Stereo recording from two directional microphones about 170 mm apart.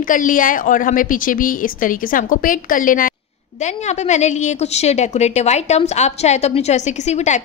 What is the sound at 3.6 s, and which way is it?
A woman's voice, 40° left (ahead or behind).